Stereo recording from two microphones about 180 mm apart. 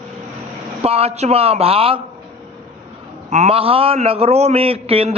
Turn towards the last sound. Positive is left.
turn(degrees=-30)  # may be behind; listen again after turning